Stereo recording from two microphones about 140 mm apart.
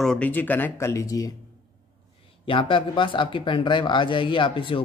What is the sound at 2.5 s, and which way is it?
Speech, 35° left (ahead or behind).